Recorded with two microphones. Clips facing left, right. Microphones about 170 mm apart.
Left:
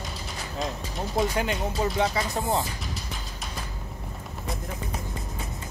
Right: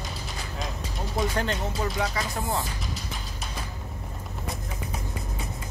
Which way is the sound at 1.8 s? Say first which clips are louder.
Left 6 dB; 20° left (ahead or behind).